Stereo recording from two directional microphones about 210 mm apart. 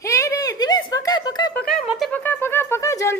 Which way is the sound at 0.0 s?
15° left (ahead or behind).